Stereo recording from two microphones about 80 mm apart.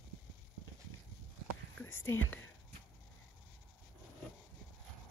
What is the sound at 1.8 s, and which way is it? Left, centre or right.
Speech, left.